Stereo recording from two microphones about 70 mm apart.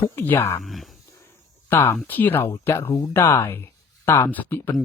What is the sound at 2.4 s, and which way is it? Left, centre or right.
Speech, left.